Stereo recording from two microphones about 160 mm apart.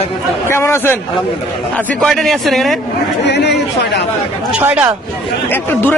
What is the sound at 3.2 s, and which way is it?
Chatter, 90° left.